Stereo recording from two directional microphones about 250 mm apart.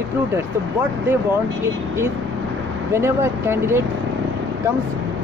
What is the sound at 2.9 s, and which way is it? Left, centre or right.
Speech, centre.